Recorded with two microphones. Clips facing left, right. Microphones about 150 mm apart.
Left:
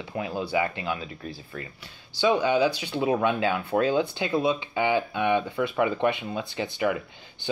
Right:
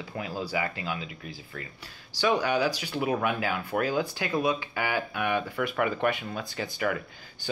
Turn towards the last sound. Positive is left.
turn(degrees=20)  # may be behind; listen again after turning